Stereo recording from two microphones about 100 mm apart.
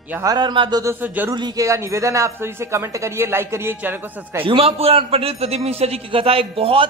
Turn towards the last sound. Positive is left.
turn(degrees=-70)  # may be behind; listen again after turning